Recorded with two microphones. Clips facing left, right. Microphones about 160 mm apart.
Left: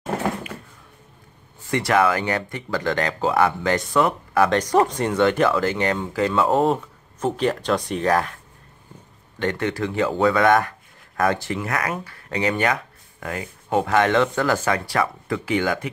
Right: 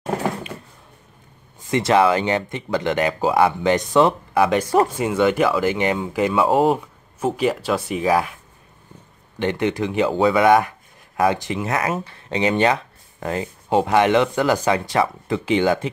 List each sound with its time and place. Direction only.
1.6 s speech: 20° right (ahead or behind)
9.4 s speech: 20° right (ahead or behind)